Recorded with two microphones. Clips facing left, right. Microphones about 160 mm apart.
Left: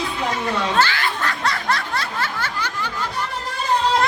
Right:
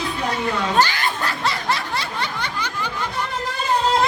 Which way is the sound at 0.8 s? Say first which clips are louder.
Right 1 dB; 15° right (ahead or behind).